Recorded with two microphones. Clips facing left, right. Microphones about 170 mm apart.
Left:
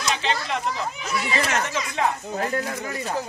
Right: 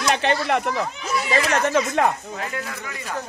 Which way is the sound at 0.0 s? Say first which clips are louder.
Right 5 dB; 60° right (ahead or behind).